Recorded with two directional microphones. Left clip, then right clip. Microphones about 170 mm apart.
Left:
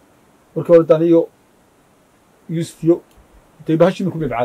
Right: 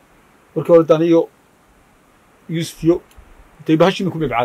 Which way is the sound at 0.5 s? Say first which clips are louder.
Even; 10° right (ahead or behind).